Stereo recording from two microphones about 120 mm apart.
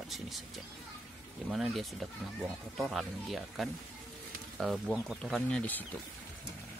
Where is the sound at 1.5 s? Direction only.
Centre (ahead or behind).